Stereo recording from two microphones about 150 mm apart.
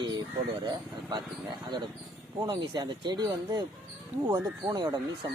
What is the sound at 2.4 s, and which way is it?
Speech, 25° right (ahead or behind).